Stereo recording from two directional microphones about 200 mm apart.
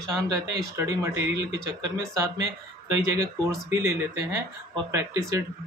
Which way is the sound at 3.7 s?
15° right (ahead or behind).